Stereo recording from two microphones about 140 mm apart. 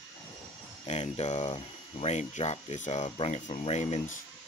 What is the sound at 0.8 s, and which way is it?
Speech, 50° left (ahead or behind).